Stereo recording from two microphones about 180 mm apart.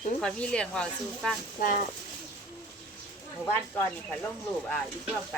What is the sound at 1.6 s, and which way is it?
Speech, 50° left (ahead or behind).